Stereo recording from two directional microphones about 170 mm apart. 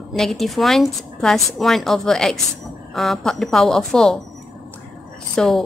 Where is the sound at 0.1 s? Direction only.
Centre (ahead or behind).